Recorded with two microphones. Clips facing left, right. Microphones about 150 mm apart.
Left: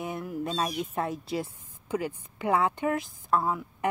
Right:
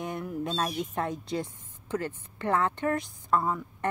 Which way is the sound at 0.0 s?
Centre (ahead or behind).